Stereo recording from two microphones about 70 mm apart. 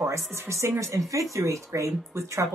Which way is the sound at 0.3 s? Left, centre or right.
Right.